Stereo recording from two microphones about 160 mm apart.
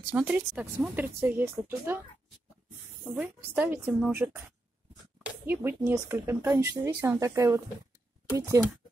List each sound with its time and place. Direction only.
0.1 s speech: 10° right (ahead or behind)
3.1 s speech: 10° right (ahead or behind)